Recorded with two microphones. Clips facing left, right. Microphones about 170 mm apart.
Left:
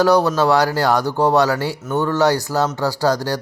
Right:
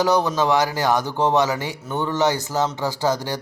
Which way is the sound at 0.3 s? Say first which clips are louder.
Left 4 dB; 15° right (ahead or behind).